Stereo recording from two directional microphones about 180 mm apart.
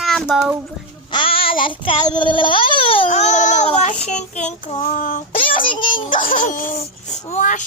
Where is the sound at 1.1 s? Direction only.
30° left (ahead or behind).